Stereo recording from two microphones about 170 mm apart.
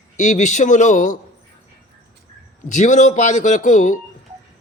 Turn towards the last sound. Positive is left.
turn(degrees=50)  # may be behind; listen again after turning